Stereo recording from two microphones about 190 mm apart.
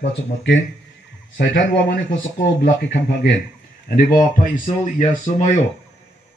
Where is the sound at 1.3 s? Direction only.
55° left (ahead or behind).